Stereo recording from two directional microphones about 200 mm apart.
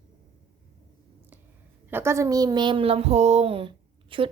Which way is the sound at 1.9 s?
10° right (ahead or behind).